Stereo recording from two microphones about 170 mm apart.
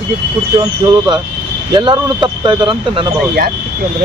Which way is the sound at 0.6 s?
25° right (ahead or behind).